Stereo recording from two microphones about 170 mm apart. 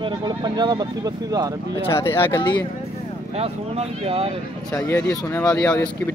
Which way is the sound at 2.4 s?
25° left (ahead or behind).